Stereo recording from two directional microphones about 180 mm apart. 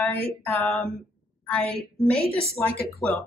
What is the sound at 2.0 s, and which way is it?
Speech, centre (ahead or behind).